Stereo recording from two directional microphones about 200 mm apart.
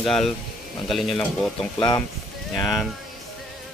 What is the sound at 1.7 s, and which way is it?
Speech, 20° left (ahead or behind).